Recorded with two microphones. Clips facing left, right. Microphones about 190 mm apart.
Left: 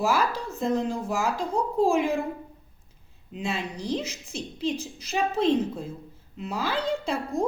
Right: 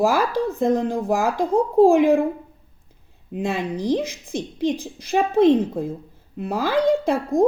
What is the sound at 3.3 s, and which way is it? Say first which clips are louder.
Speech: right 6 dB; 55° right (ahead or behind).